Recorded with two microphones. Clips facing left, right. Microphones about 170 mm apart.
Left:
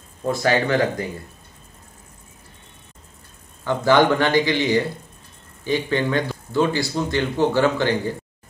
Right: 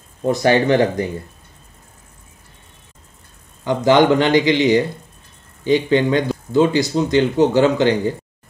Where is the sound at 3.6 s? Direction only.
20° right (ahead or behind).